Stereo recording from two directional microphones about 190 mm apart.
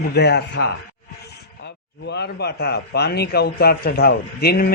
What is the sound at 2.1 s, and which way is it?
A man's voice, 60° left (ahead or behind).